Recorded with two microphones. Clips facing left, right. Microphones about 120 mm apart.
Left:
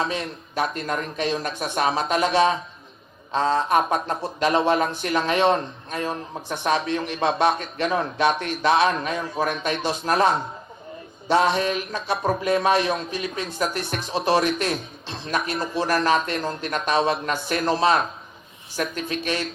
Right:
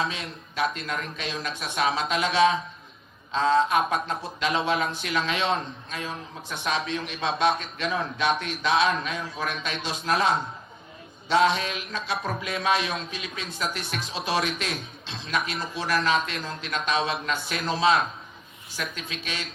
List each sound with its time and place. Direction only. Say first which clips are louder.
0.1 s a man's voice: left 7 dB; 45° left (ahead or behind)